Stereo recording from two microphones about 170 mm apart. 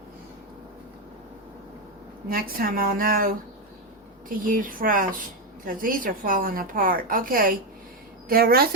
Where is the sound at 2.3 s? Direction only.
60° right (ahead or behind).